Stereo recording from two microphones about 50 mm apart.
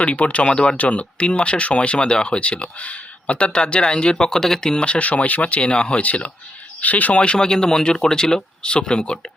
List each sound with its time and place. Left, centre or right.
0.0 s speech: left
0.5 s speech: centre
0.8 s speech: left